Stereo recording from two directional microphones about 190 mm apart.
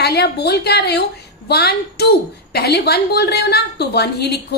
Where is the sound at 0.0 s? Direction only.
60° left (ahead or behind).